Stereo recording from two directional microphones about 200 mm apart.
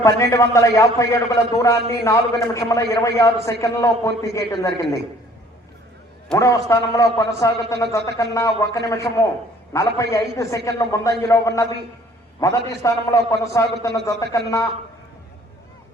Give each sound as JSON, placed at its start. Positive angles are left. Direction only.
{"t": 0.2, "sound": "a man's voice", "side_deg": 15}
{"t": 6.3, "sound": "a man's voice", "side_deg": 15}